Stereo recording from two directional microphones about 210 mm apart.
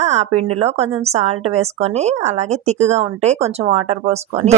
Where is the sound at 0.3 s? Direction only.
30° right (ahead or behind).